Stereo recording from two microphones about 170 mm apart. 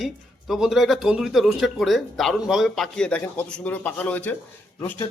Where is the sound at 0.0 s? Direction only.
Centre (ahead or behind).